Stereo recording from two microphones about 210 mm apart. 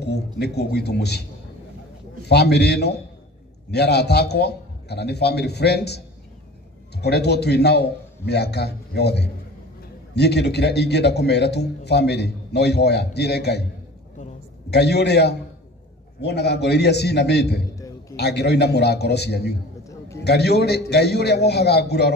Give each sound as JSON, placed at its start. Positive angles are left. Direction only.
{"t": 0.0, "sound": "a man's voice", "side_deg": 50}
{"t": 2.2, "sound": "a man's voice", "side_deg": 50}
{"t": 14.7, "sound": "a man's voice", "side_deg": 50}